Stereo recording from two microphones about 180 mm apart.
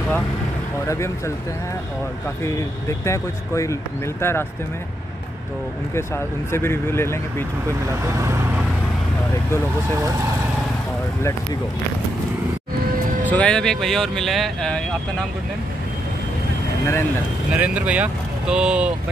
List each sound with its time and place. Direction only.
0.8 s speech: 15° left (ahead or behind)
2.4 s speech: 15° left (ahead or behind)
5.9 s speech: 15° left (ahead or behind)
8.0 s speech: 15° right (ahead or behind)
13.3 s speech: 5° left (ahead or behind)
17.6 s speech: 10° right (ahead or behind)